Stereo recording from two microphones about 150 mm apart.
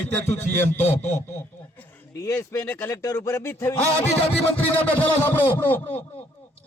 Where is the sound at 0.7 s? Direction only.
15° left (ahead or behind).